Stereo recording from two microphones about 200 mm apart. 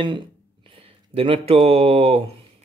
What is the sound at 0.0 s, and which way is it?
Speech, 25° right (ahead or behind).